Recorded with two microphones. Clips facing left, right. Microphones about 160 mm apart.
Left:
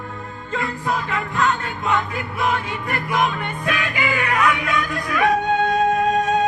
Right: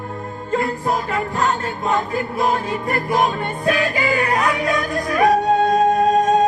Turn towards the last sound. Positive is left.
turn(degrees=-40)  # may be behind; listen again after turning